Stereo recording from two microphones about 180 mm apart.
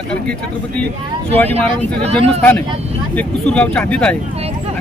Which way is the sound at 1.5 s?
35° right (ahead or behind).